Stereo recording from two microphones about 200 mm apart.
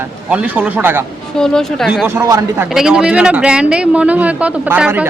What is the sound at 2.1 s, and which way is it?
Speech, 15° right (ahead or behind).